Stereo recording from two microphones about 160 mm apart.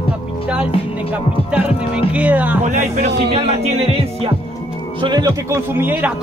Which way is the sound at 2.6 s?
50° right (ahead or behind).